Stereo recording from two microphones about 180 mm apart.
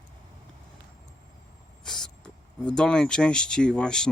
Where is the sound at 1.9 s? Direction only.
5° left (ahead or behind).